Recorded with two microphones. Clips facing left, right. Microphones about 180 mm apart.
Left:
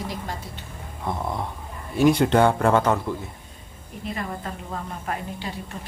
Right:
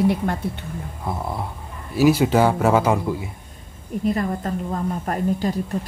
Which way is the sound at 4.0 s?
45° right (ahead or behind).